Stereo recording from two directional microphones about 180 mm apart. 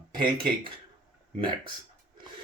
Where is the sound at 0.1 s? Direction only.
25° right (ahead or behind).